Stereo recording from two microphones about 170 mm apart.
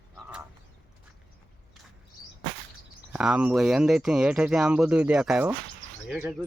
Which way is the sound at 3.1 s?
5° right (ahead or behind).